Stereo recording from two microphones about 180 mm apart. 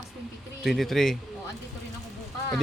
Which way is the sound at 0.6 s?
Centre (ahead or behind).